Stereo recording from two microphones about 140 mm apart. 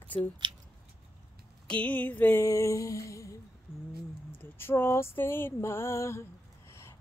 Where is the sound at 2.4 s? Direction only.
25° left (ahead or behind).